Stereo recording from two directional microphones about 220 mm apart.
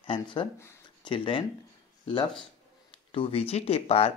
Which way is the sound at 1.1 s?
25° left (ahead or behind).